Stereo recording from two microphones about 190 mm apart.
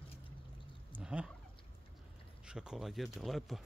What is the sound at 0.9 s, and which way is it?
Fowl, 5° right (ahead or behind).